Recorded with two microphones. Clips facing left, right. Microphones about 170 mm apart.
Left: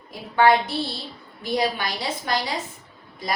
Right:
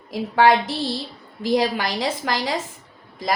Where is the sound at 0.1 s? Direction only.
90° right.